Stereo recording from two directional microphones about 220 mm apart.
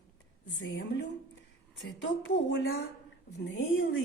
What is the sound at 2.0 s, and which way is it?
A woman's voice, 55° left (ahead or behind).